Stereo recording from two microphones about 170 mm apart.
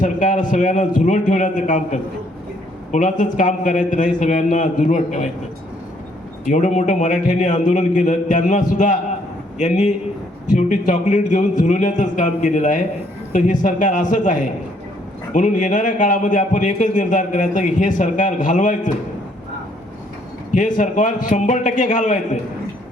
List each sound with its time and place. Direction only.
0.0 s a man's voice: 50° left (ahead or behind)
6.4 s a man's voice: 45° left (ahead or behind)
20.5 s a man's voice: 50° left (ahead or behind)